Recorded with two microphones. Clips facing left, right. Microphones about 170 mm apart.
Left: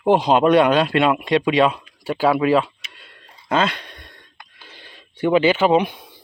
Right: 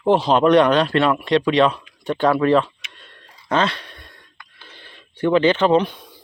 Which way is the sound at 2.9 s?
10° left (ahead or behind).